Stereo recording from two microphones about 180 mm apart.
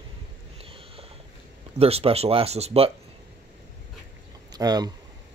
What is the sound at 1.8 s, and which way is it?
Speech, 35° right (ahead or behind).